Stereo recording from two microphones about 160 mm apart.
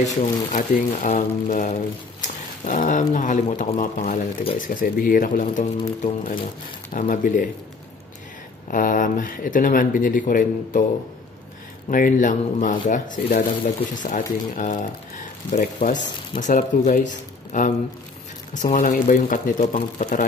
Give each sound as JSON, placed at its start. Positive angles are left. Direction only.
{"t": 0.0, "sound": "speech", "side_deg": 50}
{"t": 8.6, "sound": "speech", "side_deg": 60}
{"t": 11.9, "sound": "speech", "side_deg": 60}